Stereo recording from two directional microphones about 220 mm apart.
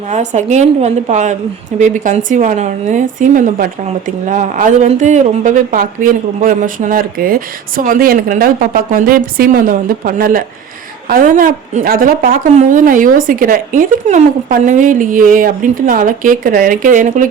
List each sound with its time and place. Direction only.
0.1 s a woman's voice: 35° right (ahead or behind)